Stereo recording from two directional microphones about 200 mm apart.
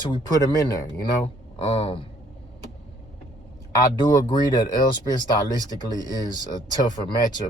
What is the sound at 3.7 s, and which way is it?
Speech, 20° left (ahead or behind).